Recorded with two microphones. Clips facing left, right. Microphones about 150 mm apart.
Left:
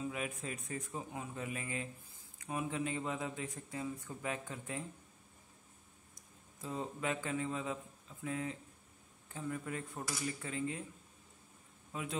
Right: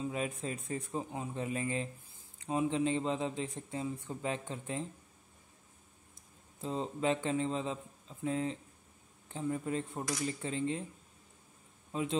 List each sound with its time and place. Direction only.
0.0 s speech: 30° right (ahead or behind)
6.1 s speech: 25° right (ahead or behind)
11.9 s a man's voice: 25° right (ahead or behind)